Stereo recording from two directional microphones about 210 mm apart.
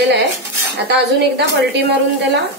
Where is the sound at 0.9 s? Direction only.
50° right (ahead or behind).